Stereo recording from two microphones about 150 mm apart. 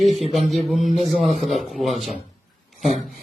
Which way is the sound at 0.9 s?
50° right (ahead or behind).